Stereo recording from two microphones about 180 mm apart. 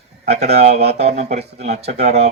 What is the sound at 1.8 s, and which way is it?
Speech, 65° right (ahead or behind).